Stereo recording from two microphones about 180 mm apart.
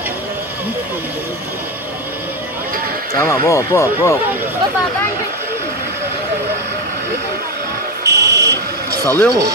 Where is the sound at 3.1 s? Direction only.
15° left (ahead or behind).